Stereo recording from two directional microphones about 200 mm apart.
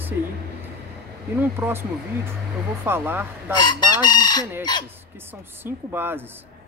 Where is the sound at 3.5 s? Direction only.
20° left (ahead or behind).